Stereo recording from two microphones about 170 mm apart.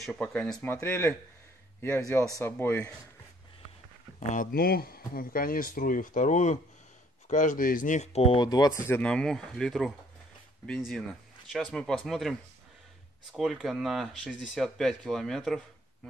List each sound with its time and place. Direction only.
0.0 s speech: 5° left (ahead or behind)
4.3 s speech: 55° left (ahead or behind); by 8.5 s 35° left (ahead or behind)
8.5 s speech: 25° left (ahead or behind); by 15.6 s centre (ahead or behind)